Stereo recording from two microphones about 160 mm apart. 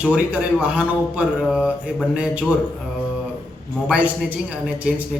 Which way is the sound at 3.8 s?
10° right (ahead or behind).